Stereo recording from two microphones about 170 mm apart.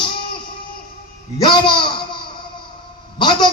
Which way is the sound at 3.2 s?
25° left (ahead or behind).